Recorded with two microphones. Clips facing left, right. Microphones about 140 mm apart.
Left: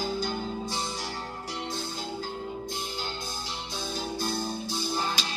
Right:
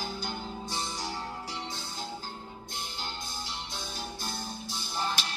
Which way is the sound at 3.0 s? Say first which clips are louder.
Left 4 dB; 90° left.